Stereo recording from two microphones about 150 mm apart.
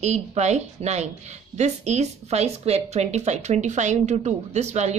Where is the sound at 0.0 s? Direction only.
45° right (ahead or behind).